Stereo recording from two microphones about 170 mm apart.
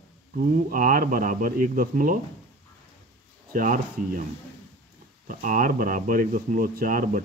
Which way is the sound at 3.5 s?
50° right (ahead or behind).